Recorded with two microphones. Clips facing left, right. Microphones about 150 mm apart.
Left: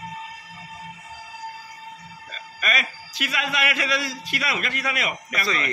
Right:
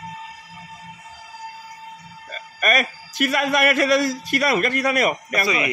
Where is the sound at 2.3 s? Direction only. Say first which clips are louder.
Right 7 dB; 50° right (ahead or behind).